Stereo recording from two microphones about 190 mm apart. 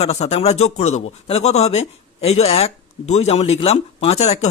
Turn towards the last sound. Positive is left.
turn(degrees=35)  # may be behind; listen again after turning